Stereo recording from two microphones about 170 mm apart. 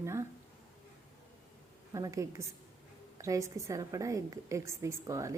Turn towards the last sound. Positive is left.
turn(degrees=-20)  # may be behind; listen again after turning